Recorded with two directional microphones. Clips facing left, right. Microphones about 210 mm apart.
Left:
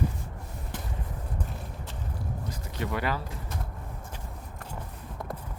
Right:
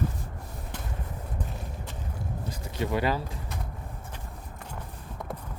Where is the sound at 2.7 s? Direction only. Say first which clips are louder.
Right 4 dB; 20° right (ahead or behind).